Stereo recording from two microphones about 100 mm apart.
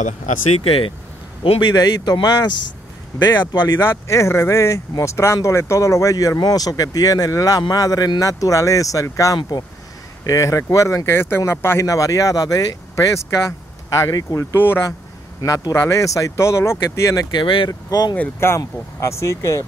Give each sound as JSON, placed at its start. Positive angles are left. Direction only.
{"t": 0.7, "sound": "speech", "side_deg": 65}
{"t": 3.6, "sound": "speech", "side_deg": 25}
{"t": 9.4, "sound": "speech", "side_deg": 45}
{"t": 10.2, "sound": "speech", "side_deg": 35}
{"t": 15.4, "sound": "speech", "side_deg": 35}
{"t": 17.3, "sound": "speech", "side_deg": 55}
{"t": 17.6, "sound": "speech", "side_deg": 40}